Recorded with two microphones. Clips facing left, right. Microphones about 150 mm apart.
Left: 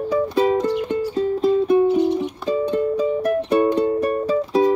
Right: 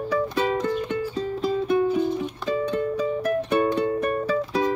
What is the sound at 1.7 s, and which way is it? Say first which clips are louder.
Music: left 3 dB; 25° left (ahead or behind).